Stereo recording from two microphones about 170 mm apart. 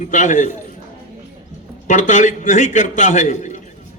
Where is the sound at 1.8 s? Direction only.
50° left (ahead or behind).